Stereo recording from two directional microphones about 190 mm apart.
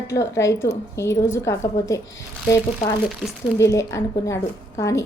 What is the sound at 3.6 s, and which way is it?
A woman's voice, 15° left (ahead or behind).